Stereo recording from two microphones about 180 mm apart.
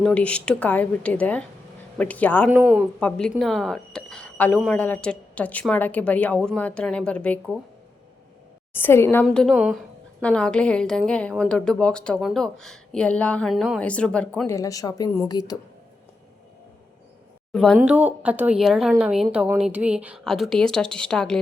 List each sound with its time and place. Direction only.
0.0 s speech: 5° left (ahead or behind)
2.5 s speech: 5° right (ahead or behind)
3.0 s speech: 5° left (ahead or behind)
8.7 s a woman's voice: 15° left (ahead or behind)
14.4 s speech: 15° left (ahead or behind)
17.5 s speech: 5° left (ahead or behind)
17.7 s a woman's voice: 10° right (ahead or behind)